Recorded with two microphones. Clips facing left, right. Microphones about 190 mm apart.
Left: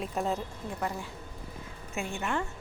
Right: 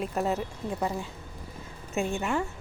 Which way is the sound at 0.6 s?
20° right (ahead or behind).